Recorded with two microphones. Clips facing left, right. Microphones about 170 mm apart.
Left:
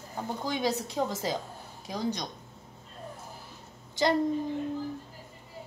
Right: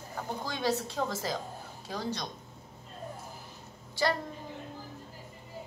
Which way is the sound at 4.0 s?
20° left (ahead or behind).